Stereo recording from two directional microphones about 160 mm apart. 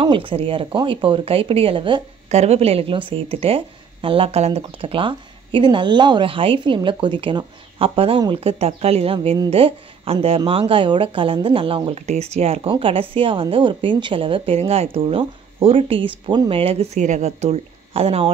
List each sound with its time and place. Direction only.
0.0 s speech: 30° right (ahead or behind)
2.2 s speech: 45° right (ahead or behind)